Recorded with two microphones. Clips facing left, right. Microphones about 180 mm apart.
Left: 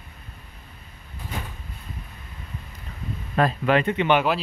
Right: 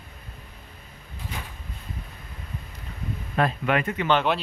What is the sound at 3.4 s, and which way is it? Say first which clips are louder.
Speech: left 3 dB; 30° left (ahead or behind).